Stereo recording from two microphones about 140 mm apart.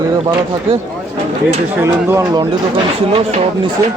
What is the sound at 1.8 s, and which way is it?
Speech, 15° right (ahead or behind).